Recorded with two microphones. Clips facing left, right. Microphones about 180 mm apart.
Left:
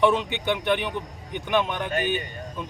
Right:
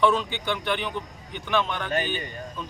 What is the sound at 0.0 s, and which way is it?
Speech, 20° left (ahead or behind).